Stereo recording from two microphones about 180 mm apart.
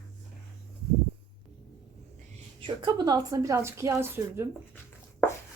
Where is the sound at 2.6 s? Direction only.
25° right (ahead or behind).